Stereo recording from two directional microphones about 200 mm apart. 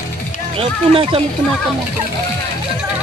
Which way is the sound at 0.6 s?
30° right (ahead or behind).